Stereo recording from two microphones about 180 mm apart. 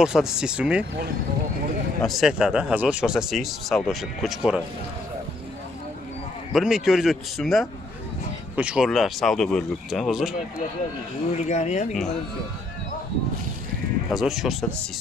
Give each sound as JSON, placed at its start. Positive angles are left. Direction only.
{"t": 0.0, "sound": "speech", "side_deg": -5}
{"t": 2.0, "sound": "speech", "side_deg": 0}
{"t": 6.5, "sound": "speech", "side_deg": -5}
{"t": 11.3, "sound": "speech", "side_deg": 40}
{"t": 14.1, "sound": "speech", "side_deg": 0}